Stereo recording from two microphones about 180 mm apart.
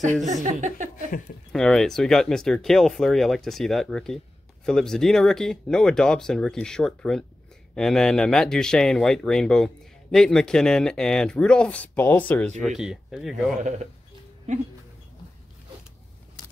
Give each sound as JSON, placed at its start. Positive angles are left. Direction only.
{"t": 0.2, "sound": "a woman's voice", "side_deg": -40}
{"t": 1.5, "sound": "speech", "side_deg": 5}